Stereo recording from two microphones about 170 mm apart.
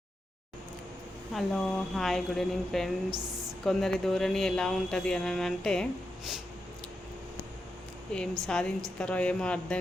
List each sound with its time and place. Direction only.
1.3 s speech: centre (ahead or behind)
3.1 s a woman's voice: 20° right (ahead or behind)
3.6 s speech: centre (ahead or behind)
8.1 s speech: 5° left (ahead or behind)